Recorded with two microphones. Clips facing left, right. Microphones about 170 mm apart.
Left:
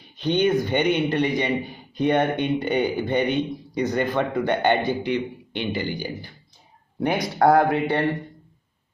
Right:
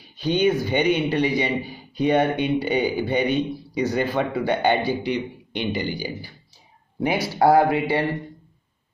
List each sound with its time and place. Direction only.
0.2 s a man's voice: 10° right (ahead or behind)